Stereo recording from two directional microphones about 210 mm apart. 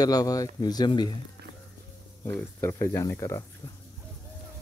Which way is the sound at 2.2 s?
15° left (ahead or behind).